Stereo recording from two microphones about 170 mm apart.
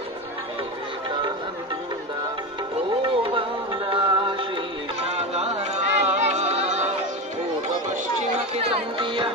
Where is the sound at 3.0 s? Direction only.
30° right (ahead or behind).